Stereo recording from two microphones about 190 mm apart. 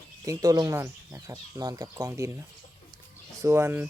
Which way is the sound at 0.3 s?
20° right (ahead or behind).